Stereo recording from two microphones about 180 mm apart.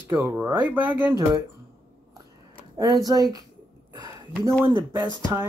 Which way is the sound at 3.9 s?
20° right (ahead or behind).